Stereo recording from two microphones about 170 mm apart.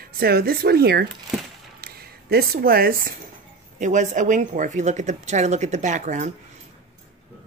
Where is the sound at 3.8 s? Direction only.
45° right (ahead or behind).